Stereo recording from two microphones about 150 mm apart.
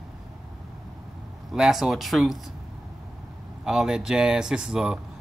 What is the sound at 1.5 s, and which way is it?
Speech, 5° right (ahead or behind).